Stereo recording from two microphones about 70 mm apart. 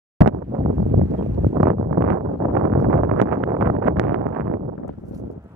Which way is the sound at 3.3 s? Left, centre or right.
Centre.